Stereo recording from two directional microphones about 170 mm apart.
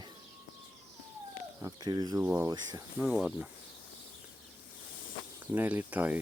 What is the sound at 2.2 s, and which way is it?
Speech, 5° right (ahead or behind).